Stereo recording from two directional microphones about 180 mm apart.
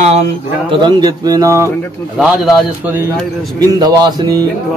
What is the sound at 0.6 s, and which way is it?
Speech, 25° right (ahead or behind).